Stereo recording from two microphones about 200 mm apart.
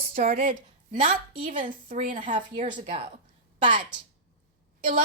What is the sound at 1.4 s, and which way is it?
Speech, 40° right (ahead or behind).